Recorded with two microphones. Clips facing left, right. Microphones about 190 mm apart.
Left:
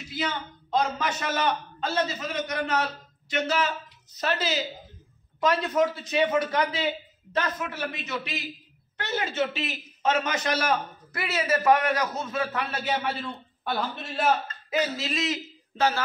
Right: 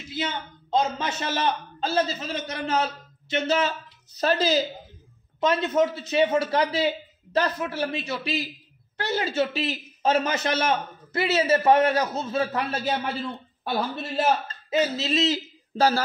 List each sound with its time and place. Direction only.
0.1 s a man's voice: 25° right (ahead or behind)
5.4 s a man's voice: 25° right (ahead or behind)
14.5 s speech: 25° right (ahead or behind)